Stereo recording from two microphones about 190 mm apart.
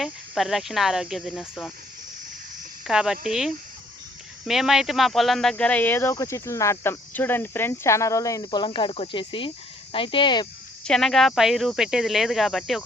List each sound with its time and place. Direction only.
0.0 s speech: centre (ahead or behind)
2.8 s speech: 5° right (ahead or behind); by 10.4 s 25° left (ahead or behind)
10.8 s speech: centre (ahead or behind)